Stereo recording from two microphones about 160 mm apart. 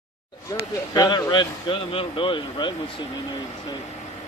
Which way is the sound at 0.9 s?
25° left (ahead or behind).